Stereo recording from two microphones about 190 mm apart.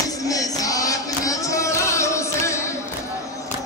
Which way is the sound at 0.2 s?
20° left (ahead or behind).